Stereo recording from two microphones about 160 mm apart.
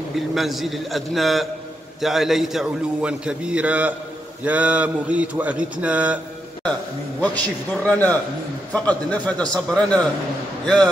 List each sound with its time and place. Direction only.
0.1 s a man's voice: centre (ahead or behind)
7.2 s a man's voice: 10° left (ahead or behind)